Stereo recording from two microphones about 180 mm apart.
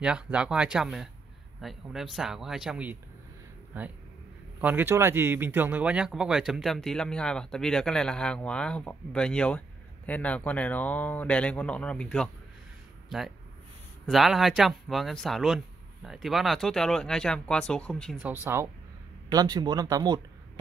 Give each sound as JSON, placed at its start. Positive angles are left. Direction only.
{"t": 0.0, "sound": "a man's voice", "side_deg": -5}
{"t": 14.0, "sound": "a man's voice", "side_deg": 0}
{"t": 18.2, "sound": "speech", "side_deg": -10}
{"t": 19.3, "sound": "speech", "side_deg": -25}